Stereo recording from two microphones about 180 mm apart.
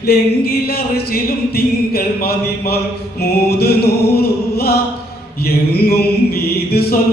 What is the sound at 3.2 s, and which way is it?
Music, 60° left (ahead or behind).